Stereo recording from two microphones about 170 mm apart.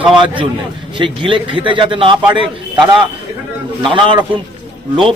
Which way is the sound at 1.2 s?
30° right (ahead or behind).